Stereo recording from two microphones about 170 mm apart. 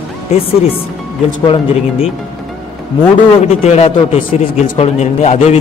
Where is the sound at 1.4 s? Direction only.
35° left (ahead or behind).